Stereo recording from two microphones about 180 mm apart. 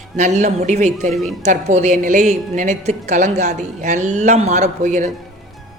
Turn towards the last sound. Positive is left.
turn(degrees=-40)  # may be behind; listen again after turning